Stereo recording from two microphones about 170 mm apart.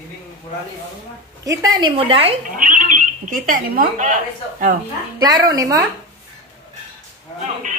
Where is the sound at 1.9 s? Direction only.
35° right (ahead or behind).